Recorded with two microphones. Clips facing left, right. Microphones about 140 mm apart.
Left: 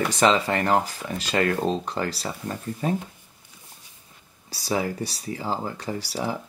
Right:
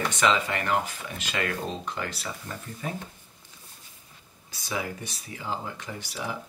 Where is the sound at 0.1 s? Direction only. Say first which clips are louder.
Left 5 dB; 35° left (ahead or behind).